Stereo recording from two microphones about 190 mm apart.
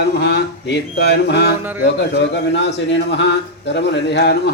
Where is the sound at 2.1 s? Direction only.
65° left (ahead or behind).